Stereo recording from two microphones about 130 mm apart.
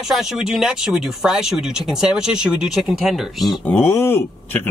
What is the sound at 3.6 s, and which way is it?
Speech, 15° left (ahead or behind).